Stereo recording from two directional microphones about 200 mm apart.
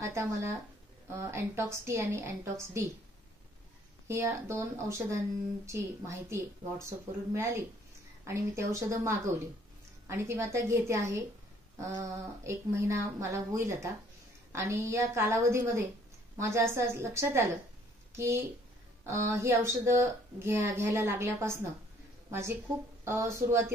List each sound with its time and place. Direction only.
0.0 s speech: 15° right (ahead or behind)
4.1 s speech: 15° right (ahead or behind)
8.3 s a woman's voice: 15° right (ahead or behind)
23.0 s speech: 15° right (ahead or behind)